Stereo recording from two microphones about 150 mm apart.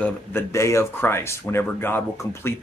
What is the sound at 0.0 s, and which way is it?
Speech, 15° left (ahead or behind).